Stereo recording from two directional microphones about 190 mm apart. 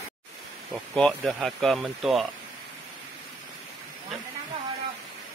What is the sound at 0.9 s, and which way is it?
Speech, centre (ahead or behind).